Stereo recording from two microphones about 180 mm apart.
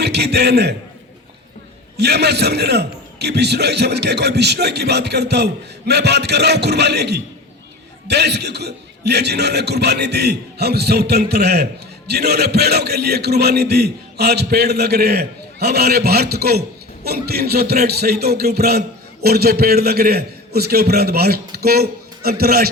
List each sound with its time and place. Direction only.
0.0 s a man's voice: 65° right (ahead or behind)
2.0 s a man's voice: 65° right (ahead or behind)